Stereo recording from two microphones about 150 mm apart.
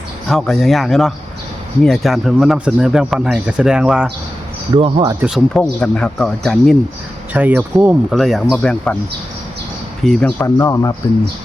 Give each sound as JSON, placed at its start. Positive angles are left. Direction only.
{"t": 0.3, "sound": "speech", "side_deg": 5}
{"t": 4.7, "sound": "speech", "side_deg": -35}
{"t": 5.5, "sound": "speech", "side_deg": 5}
{"t": 7.3, "sound": "speech", "side_deg": -10}
{"t": 8.1, "sound": "speech", "side_deg": 0}
{"t": 10.0, "sound": "speech", "side_deg": 5}
{"t": 10.4, "sound": "speech", "side_deg": 20}